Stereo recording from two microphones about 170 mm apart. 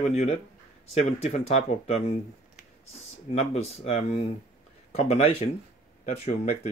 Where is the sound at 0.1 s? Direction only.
40° left (ahead or behind).